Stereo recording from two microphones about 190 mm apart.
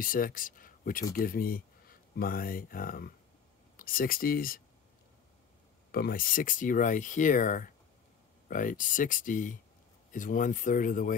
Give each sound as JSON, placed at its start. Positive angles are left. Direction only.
{"t": 0.0, "sound": "speech", "side_deg": 45}
{"t": 5.9, "sound": "speech", "side_deg": 50}